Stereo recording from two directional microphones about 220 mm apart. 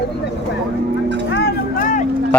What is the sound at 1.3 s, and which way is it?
Music, 40° left (ahead or behind).